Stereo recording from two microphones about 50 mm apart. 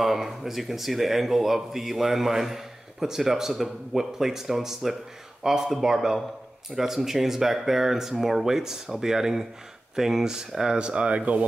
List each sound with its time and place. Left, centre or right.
0.0 s a man's voice: centre; by 11.4 s right